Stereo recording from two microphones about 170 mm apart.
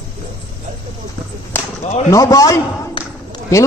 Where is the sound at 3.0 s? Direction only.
30° left (ahead or behind).